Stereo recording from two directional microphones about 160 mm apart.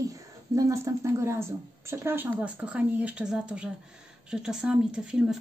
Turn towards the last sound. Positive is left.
turn(degrees=-5)  # may be behind; listen again after turning